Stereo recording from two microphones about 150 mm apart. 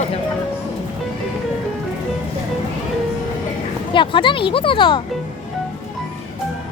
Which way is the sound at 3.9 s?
35° left (ahead or behind).